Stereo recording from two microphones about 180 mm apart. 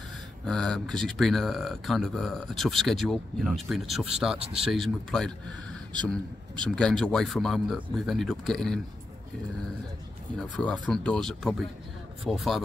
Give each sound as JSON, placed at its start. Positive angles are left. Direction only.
{"t": 0.5, "sound": "speech", "side_deg": 5}
{"t": 10.4, "sound": "speech", "side_deg": 5}